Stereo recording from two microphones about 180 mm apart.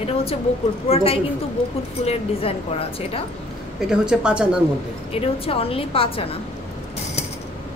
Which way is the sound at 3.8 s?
5° right (ahead or behind).